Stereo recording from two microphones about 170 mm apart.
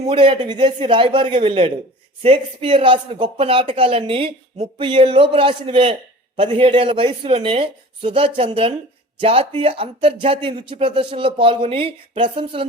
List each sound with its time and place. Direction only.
0.0 s speech: 30° right (ahead or behind)